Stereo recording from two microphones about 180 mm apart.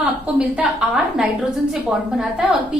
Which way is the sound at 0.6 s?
5° right (ahead or behind).